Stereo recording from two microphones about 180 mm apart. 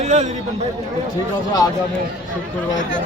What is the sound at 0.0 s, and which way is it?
Speech, 40° right (ahead or behind).